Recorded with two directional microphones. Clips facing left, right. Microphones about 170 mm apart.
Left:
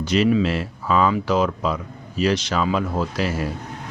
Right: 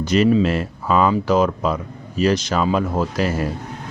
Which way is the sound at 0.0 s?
45° right (ahead or behind).